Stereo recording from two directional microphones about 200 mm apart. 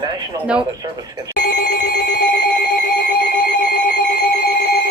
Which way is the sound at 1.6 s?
55° left (ahead or behind).